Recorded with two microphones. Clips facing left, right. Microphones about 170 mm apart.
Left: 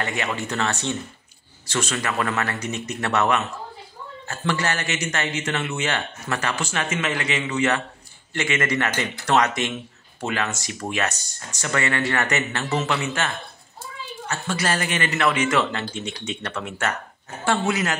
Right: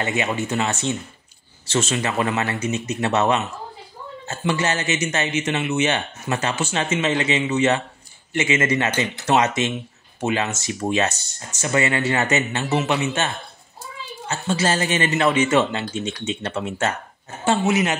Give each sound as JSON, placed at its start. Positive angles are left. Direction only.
{"t": 0.0, "sound": "speech", "side_deg": -20}